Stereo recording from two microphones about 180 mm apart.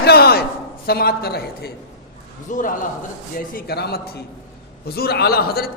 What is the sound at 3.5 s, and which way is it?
A man's voice, 60° left (ahead or behind).